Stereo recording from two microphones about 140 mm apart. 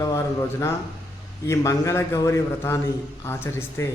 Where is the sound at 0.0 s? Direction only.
25° left (ahead or behind).